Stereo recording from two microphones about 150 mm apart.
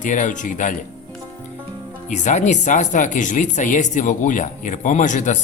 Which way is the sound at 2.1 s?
50° left (ahead or behind).